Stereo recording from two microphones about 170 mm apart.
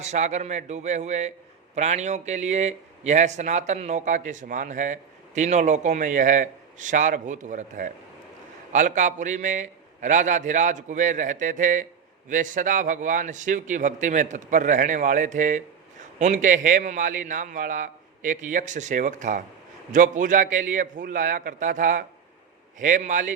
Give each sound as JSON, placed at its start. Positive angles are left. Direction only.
{"t": 0.0, "sound": "a man's voice", "side_deg": -45}